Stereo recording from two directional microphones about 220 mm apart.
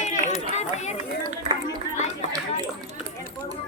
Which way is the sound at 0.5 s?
30° left (ahead or behind).